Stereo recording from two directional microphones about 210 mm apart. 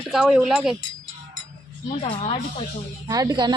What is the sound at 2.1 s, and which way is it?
Speech, 25° left (ahead or behind).